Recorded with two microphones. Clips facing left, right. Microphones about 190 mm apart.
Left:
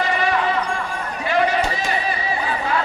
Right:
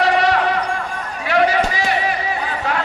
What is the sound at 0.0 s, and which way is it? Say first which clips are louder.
Basketball bounce: right 5 dB; 75° right (ahead or behind).